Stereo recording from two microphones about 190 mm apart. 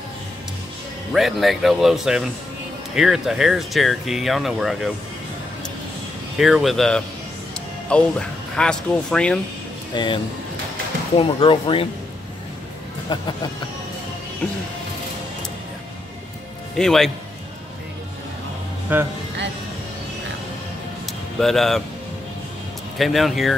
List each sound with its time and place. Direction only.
1.1 s speech: centre (ahead or behind)
6.3 s speech: centre (ahead or behind)
9.9 s speech: 25° left (ahead or behind)
13.1 s speech: 25° left (ahead or behind)
16.7 s speech: centre (ahead or behind)
18.9 s speech: 10° right (ahead or behind)
21.4 s speech: centre (ahead or behind)
22.9 s speech: centre (ahead or behind)